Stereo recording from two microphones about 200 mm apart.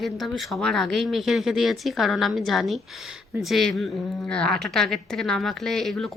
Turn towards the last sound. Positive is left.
turn(degrees=0)  # may be behind; listen again after turning